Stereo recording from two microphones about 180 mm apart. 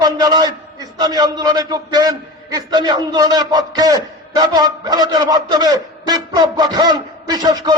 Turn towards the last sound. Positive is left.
turn(degrees=-20)  # may be behind; listen again after turning